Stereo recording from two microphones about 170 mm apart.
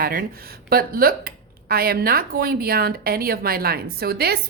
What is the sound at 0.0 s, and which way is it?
Speech, 60° right (ahead or behind).